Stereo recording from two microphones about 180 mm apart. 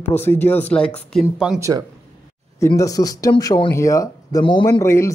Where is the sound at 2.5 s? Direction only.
15° left (ahead or behind).